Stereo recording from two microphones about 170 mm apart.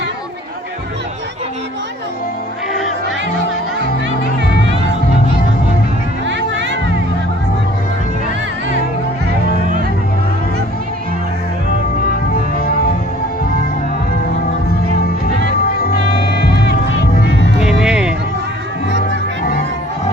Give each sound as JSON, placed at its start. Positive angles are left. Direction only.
{"t": 6.2, "sound": "music", "side_deg": -90}
{"t": 12.5, "sound": "music", "side_deg": 60}
{"t": 15.0, "sound": "music", "side_deg": 65}
{"t": 17.6, "sound": "music", "side_deg": -5}